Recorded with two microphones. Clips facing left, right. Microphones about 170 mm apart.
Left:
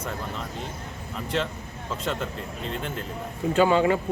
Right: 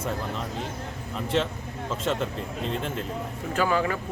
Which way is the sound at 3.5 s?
25° left (ahead or behind).